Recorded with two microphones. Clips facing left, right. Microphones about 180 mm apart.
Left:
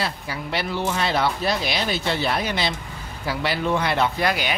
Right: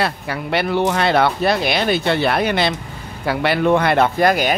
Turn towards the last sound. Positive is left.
turn(degrees=-45)  # may be behind; listen again after turning